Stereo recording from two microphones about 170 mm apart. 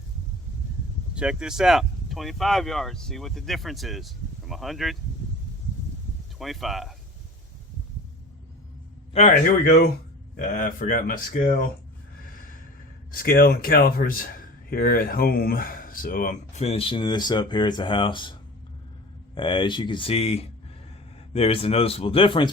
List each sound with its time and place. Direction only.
1.1 s speech: 5° right (ahead or behind)
6.4 s speech: centre (ahead or behind)
9.1 s speech: 40° left (ahead or behind)
12.3 s a sound: 55° left (ahead or behind)
13.1 s a man's voice: 60° left (ahead or behind); by 22.4 s 30° left (ahead or behind)